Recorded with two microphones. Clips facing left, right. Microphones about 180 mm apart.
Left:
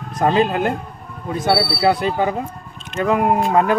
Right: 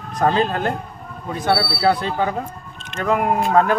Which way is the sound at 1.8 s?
15° left (ahead or behind).